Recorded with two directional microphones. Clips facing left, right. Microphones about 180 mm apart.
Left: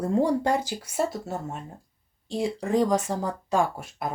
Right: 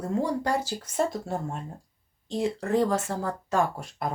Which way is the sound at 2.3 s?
10° left (ahead or behind).